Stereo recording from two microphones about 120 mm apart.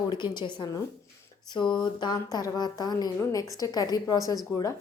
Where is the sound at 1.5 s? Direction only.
40° left (ahead or behind).